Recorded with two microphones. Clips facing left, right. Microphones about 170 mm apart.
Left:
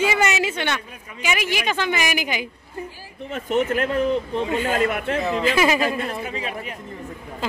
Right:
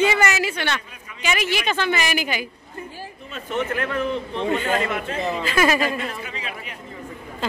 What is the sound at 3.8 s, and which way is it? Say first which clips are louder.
Speech: left 4 dB; 35° left (ahead or behind).